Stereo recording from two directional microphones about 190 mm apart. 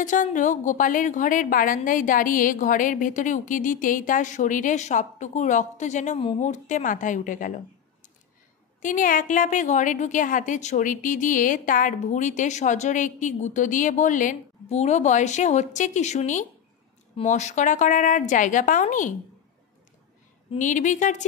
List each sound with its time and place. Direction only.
0.0 s a woman's voice: 40° left (ahead or behind)
8.8 s a woman's voice: 45° left (ahead or behind)
20.5 s a woman's voice: 40° left (ahead or behind)